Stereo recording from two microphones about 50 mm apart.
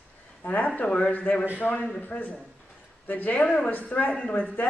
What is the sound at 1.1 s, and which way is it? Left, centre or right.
A man's voice, left.